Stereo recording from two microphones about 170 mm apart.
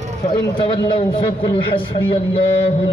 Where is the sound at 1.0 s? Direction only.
30° left (ahead or behind).